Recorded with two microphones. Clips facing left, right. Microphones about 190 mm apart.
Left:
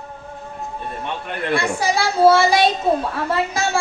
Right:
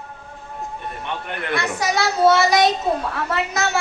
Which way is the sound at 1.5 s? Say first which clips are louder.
Left 2 dB; 30° left (ahead or behind).